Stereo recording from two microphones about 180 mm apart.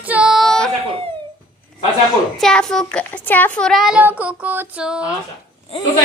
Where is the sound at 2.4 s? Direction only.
5° left (ahead or behind).